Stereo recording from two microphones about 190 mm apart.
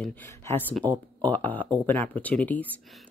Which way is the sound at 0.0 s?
10° left (ahead or behind).